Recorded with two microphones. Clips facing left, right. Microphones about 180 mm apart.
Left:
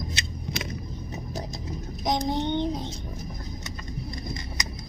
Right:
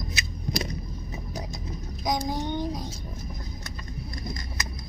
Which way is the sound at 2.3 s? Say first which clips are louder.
Left 3 dB; 25° left (ahead or behind).